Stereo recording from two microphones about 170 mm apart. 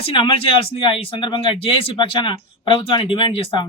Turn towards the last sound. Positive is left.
turn(degrees=30)  # may be behind; listen again after turning